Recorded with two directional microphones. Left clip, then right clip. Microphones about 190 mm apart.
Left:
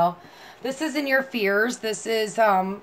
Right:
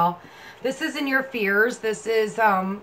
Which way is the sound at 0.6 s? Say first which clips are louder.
Even; 40° left (ahead or behind).